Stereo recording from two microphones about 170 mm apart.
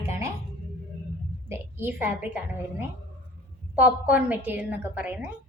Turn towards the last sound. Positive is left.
turn(degrees=-10)  # may be behind; listen again after turning